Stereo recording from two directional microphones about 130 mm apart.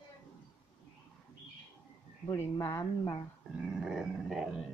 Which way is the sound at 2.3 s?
20° left (ahead or behind).